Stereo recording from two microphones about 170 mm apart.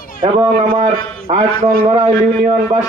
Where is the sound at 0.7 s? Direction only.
40° right (ahead or behind).